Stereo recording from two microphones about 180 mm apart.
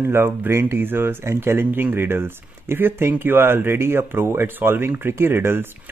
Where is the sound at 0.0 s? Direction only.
15° right (ahead or behind).